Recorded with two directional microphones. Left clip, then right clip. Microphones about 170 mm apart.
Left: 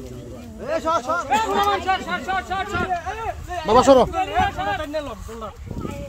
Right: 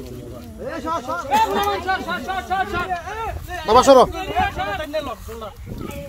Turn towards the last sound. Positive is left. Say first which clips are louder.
# right 2 dB
turn(degrees=-5)  # may be behind; listen again after turning